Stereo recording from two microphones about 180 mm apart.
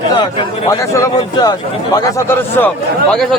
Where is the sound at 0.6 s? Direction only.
20° left (ahead or behind).